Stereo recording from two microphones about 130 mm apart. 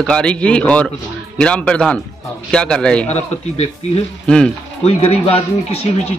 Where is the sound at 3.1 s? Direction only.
55° left (ahead or behind).